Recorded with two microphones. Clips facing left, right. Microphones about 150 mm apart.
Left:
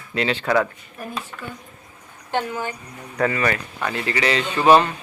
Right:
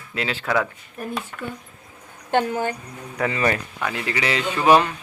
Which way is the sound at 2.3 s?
50° right (ahead or behind).